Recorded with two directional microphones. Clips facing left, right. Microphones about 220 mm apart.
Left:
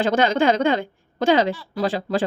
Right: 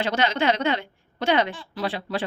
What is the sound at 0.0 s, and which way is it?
A woman's voice, 50° left (ahead or behind).